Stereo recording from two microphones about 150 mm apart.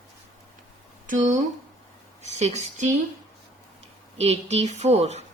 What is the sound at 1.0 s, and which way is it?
Speech, 60° right (ahead or behind).